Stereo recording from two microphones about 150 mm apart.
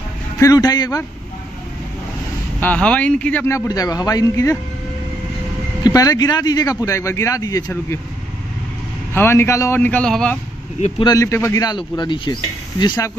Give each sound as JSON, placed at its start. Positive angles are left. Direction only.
{"t": 0.4, "sound": "speech", "side_deg": 25}
{"t": 2.6, "sound": "speech", "side_deg": 10}
{"t": 5.9, "sound": "speech", "side_deg": 25}
{"t": 9.1, "sound": "a man's voice", "side_deg": 15}
{"t": 11.1, "sound": "speech", "side_deg": 20}